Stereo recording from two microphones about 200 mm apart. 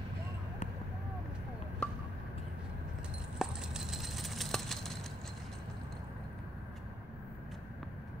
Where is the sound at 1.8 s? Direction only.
5° left (ahead or behind).